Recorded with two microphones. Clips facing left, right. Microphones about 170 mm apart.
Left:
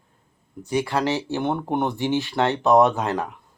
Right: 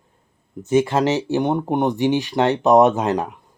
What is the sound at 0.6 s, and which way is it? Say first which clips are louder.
Speech: right 6 dB; 20° right (ahead or behind).